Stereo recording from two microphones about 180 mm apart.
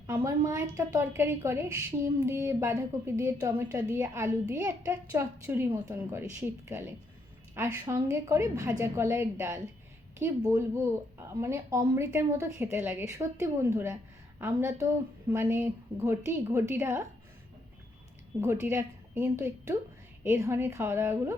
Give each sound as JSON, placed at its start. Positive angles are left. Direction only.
{"t": 0.1, "sound": "a woman's voice", "side_deg": -15}
{"t": 18.3, "sound": "a woman's voice", "side_deg": -15}